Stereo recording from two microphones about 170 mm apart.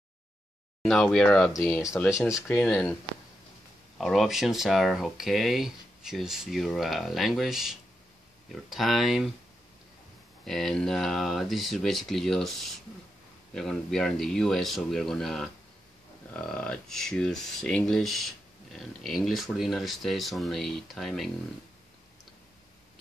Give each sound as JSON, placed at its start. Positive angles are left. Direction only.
{"t": 0.8, "sound": "speech", "side_deg": 5}
{"t": 2.3, "sound": "speech", "side_deg": 5}
{"t": 4.0, "sound": "speech", "side_deg": 0}
{"t": 10.4, "sound": "speech", "side_deg": 0}